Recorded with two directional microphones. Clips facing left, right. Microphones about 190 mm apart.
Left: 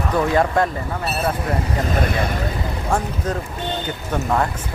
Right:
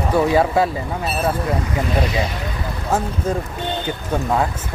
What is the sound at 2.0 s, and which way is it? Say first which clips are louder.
Speech: even; 55° left (ahead or behind).